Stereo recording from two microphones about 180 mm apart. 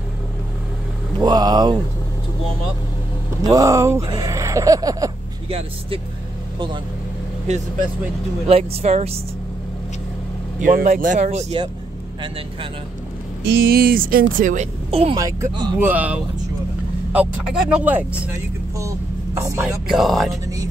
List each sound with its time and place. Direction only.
1.2 s speech: 25° right (ahead or behind)
3.4 s speech: 20° right (ahead or behind)
5.5 s speech: 35° right (ahead or behind)
8.5 s speech: 35° right (ahead or behind)
10.6 s speech: 45° right (ahead or behind); by 11.7 s 30° right (ahead or behind)
13.4 s speech: 60° right (ahead or behind); by 15.1 s 35° right (ahead or behind)
15.1 s speech: 20° right (ahead or behind)
15.8 s speech: 10° right (ahead or behind)
18.8 s vehicle: 15° right (ahead or behind)
19.9 s speech: centre (ahead or behind)